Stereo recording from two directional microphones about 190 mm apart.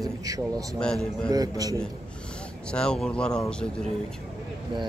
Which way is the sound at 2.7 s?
5° left (ahead or behind).